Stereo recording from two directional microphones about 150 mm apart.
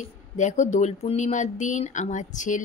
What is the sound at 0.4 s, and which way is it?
Speech, 55° left (ahead or behind).